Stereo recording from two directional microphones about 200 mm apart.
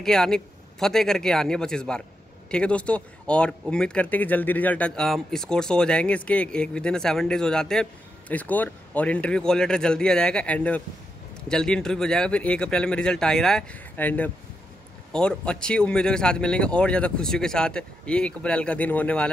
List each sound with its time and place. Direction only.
0.0 s speech: 5° left (ahead or behind)